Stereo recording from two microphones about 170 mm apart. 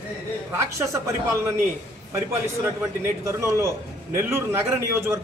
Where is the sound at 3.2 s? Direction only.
15° right (ahead or behind).